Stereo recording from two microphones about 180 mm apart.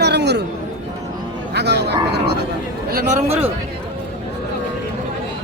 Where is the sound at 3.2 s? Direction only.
35° right (ahead or behind).